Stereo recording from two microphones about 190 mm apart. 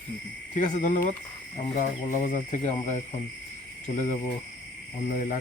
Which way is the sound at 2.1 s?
40° left (ahead or behind).